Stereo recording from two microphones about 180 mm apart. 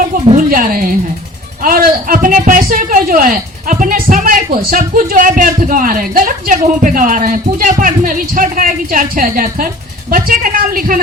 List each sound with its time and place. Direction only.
0.3 s speech: 50° right (ahead or behind)